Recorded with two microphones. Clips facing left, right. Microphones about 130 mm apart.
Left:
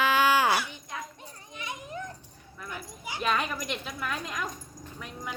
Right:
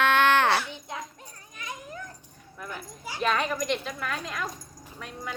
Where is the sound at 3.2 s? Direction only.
5° left (ahead or behind).